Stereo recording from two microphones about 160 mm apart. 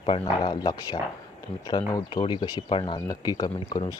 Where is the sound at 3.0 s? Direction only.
20° left (ahead or behind).